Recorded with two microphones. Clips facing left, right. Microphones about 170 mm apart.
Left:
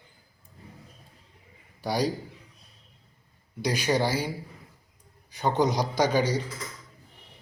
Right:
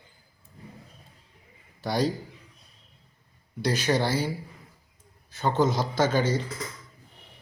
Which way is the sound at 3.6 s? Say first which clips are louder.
Even; 10° left (ahead or behind).